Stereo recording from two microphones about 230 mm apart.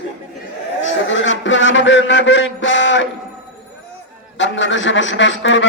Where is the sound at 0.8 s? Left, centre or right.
Left.